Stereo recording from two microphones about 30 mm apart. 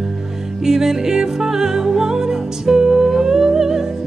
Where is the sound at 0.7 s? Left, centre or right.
Centre.